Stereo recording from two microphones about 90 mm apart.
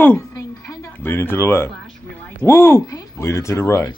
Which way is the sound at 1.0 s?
25° left (ahead or behind).